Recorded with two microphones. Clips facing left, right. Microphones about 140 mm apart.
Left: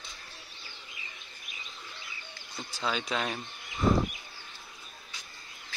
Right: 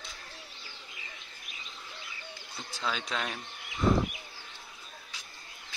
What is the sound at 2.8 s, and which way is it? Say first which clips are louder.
Speech: left 3 dB; centre (ahead or behind).